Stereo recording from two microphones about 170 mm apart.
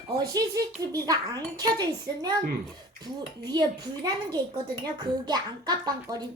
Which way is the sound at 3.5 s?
25° right (ahead or behind).